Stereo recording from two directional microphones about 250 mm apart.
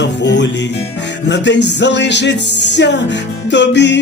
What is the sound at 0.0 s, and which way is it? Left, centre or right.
Music, left.